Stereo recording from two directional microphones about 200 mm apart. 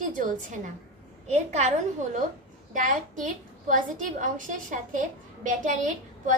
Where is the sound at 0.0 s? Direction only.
40° right (ahead or behind).